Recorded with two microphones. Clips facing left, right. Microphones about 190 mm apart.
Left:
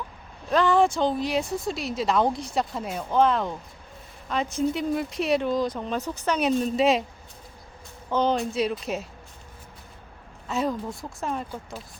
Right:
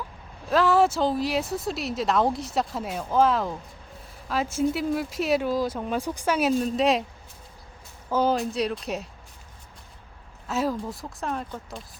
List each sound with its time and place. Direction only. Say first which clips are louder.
0.4 s speech: even; 5° right (ahead or behind)
8.1 s speech: even; 5° right (ahead or behind)
10.5 s speech: even; centre (ahead or behind)